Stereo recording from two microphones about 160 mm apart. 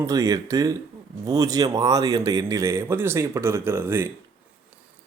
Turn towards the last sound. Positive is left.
turn(degrees=-15)  # may be behind; listen again after turning